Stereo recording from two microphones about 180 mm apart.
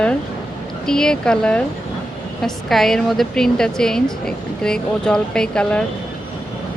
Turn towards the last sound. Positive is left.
turn(degrees=5)  # may be behind; listen again after turning